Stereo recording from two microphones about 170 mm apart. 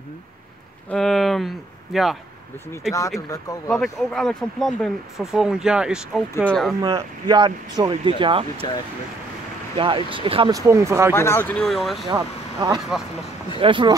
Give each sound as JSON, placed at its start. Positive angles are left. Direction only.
{"t": 0.8, "sound": "speech", "side_deg": 0}
{"t": 3.2, "sound": "speech", "side_deg": 20}
{"t": 3.7, "sound": "speech", "side_deg": 5}
{"t": 6.8, "sound": "speech", "side_deg": -25}
{"t": 9.8, "sound": "speech", "side_deg": -30}
{"t": 10.5, "sound": "speech", "side_deg": -15}
{"t": 11.1, "sound": "speech", "side_deg": 15}
{"t": 12.1, "sound": "speech", "side_deg": -25}